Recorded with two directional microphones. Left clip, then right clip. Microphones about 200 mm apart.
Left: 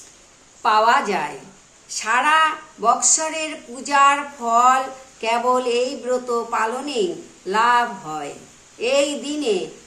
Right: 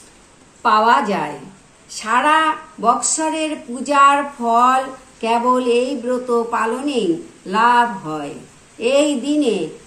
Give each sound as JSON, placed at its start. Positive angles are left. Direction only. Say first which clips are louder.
{"t": 0.6, "sound": "a woman's voice", "louder": "right 2 dB", "side_deg": 25}